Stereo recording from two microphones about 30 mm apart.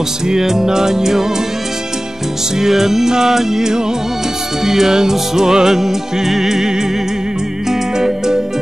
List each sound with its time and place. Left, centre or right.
0.3 s music: centre
2.6 s music: centre